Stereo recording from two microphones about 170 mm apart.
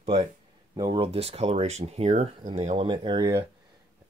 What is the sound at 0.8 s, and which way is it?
Speech, 30° right (ahead or behind).